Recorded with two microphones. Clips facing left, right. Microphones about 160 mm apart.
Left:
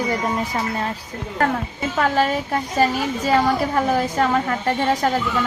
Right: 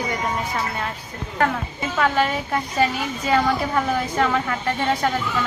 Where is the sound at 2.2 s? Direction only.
40° left (ahead or behind).